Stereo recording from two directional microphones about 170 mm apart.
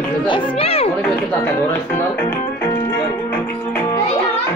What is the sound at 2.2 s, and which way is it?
Music, 15° left (ahead or behind).